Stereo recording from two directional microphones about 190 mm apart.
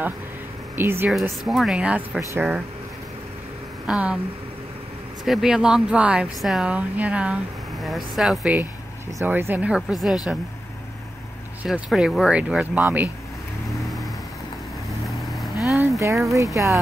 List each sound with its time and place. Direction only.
0.7 s speech: 10° right (ahead or behind)
1.1 s speech: centre (ahead or behind)
3.8 s speech: 5° right (ahead or behind)
5.2 s speech: centre (ahead or behind)
11.6 s speech: 5° right (ahead or behind)
15.0 s vehicle: centre (ahead or behind)
15.6 s a sound: centre (ahead or behind)